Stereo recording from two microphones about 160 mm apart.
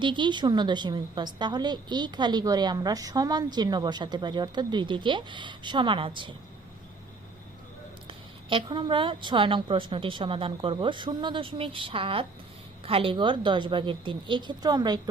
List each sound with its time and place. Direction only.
0.0 s a woman's voice: 30° right (ahead or behind)
8.0 s a woman's voice: 30° right (ahead or behind)